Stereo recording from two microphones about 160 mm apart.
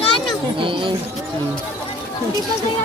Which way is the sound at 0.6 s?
30° right (ahead or behind).